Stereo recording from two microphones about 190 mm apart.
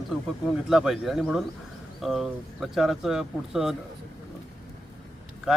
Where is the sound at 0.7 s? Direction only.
Centre (ahead or behind).